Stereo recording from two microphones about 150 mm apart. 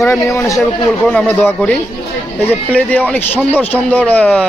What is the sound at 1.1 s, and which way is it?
Speech, 10° left (ahead or behind).